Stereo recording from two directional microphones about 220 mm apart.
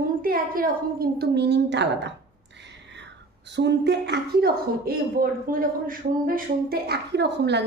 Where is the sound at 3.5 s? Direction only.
50° right (ahead or behind).